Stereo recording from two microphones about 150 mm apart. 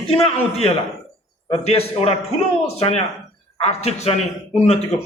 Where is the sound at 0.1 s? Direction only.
40° left (ahead or behind).